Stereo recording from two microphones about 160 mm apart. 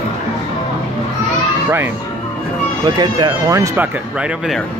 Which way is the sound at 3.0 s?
25° right (ahead or behind).